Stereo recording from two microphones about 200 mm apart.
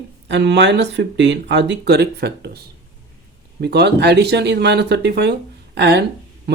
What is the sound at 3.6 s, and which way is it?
Speech, 55° right (ahead or behind).